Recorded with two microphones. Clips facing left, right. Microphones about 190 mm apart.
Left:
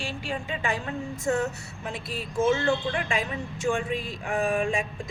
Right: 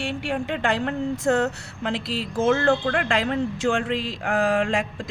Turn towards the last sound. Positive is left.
turn(degrees=-75)  # may be behind; listen again after turning